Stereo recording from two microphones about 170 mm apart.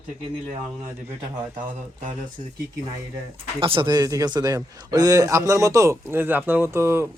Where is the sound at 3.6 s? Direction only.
30° right (ahead or behind).